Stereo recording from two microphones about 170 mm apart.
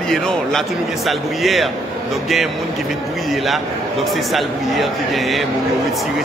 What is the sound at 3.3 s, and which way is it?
A man's voice, centre (ahead or behind).